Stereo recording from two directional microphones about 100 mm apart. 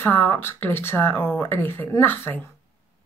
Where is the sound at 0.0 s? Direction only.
20° left (ahead or behind).